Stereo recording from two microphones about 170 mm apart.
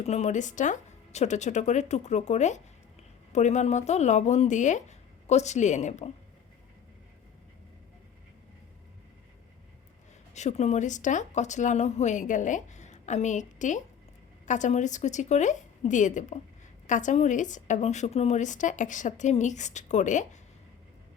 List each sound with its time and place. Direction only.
0.0 s speech: 40° left (ahead or behind)
10.3 s speech: 40° left (ahead or behind)